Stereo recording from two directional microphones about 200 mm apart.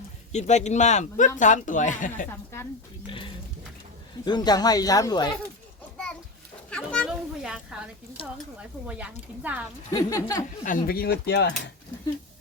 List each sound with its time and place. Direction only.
0.3 s speech: 35° left (ahead or behind)
4.3 s speech: 20° left (ahead or behind)
6.7 s a sound: 5° left (ahead or behind)
8.5 s speech: 5° right (ahead or behind)
9.9 s speech: 15° left (ahead or behind)
10.6 s speech: 45° left (ahead or behind)